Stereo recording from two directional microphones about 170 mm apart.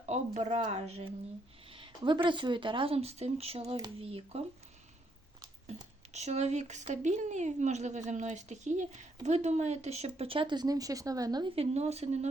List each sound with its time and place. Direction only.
0.0 s speech: 40° right (ahead or behind)
6.1 s a woman's voice: 40° right (ahead or behind)